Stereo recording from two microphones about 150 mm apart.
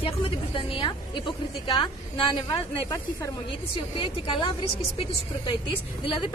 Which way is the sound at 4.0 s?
35° left (ahead or behind).